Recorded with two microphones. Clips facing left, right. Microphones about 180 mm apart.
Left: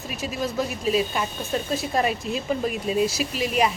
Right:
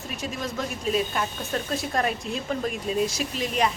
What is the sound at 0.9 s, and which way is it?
A woman's voice, 5° left (ahead or behind).